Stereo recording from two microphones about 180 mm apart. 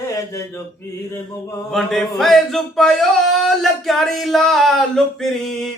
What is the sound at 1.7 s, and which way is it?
Speech, centre (ahead or behind).